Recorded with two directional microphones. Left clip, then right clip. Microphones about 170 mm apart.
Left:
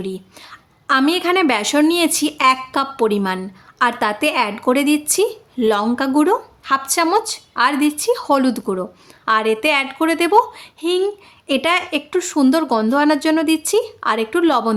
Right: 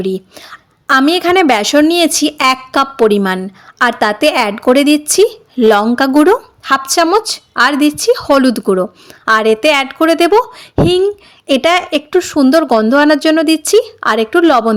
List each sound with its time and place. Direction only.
0.0 s a woman's voice: 35° right (ahead or behind)